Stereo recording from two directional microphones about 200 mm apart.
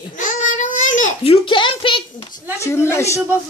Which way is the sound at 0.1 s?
40° left (ahead or behind).